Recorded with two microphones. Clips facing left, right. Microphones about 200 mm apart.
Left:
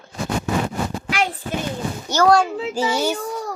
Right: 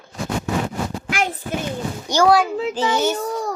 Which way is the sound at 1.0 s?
50° right (ahead or behind).